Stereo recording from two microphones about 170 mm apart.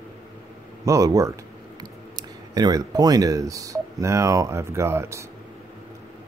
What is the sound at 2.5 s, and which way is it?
Speech, 20° right (ahead or behind).